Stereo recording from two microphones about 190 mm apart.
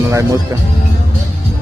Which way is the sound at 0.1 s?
20° right (ahead or behind).